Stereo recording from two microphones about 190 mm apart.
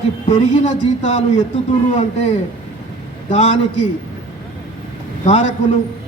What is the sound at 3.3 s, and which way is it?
Speech, 35° left (ahead or behind).